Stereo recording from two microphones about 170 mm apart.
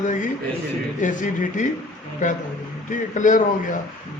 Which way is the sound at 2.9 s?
50° left (ahead or behind).